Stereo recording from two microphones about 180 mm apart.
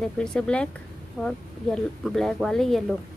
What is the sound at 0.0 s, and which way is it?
Speech, 5° left (ahead or behind).